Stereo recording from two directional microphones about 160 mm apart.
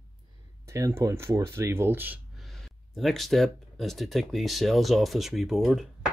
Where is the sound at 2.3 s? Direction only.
Centre (ahead or behind).